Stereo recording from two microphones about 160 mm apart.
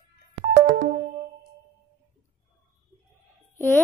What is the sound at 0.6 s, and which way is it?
Music, 50° right (ahead or behind).